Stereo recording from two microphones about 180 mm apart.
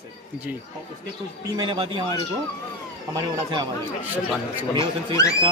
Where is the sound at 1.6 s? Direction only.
25° right (ahead or behind).